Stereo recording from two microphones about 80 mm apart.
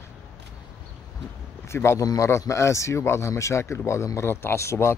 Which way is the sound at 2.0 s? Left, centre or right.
Left.